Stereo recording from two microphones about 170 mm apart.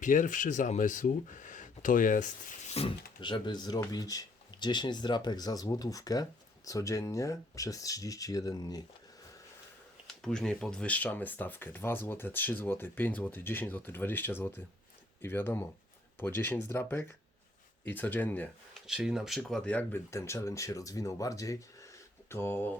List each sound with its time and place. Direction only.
0.0 s speech: 50° left (ahead or behind); by 8.8 s 20° left (ahead or behind)
10.1 s speech: 5° left (ahead or behind)
18.9 s speech: 5° right (ahead or behind); by 22.7 s 10° left (ahead or behind)